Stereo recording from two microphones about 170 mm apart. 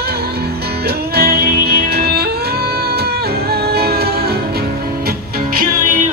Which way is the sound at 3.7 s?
65° right (ahead or behind).